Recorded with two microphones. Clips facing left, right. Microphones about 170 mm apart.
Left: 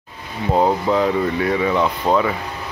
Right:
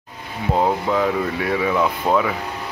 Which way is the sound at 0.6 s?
Centre (ahead or behind).